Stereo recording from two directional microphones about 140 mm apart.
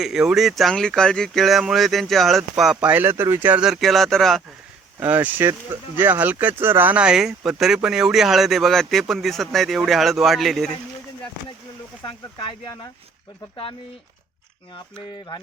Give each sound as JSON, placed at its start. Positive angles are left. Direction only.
{"t": 0.0, "sound": "speech", "side_deg": -5}
{"t": 4.9, "sound": "speech", "side_deg": -10}
{"t": 12.0, "sound": "speech", "side_deg": 30}